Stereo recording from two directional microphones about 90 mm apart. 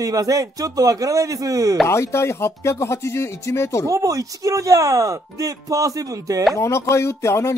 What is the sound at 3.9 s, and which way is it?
Speech, 40° right (ahead or behind).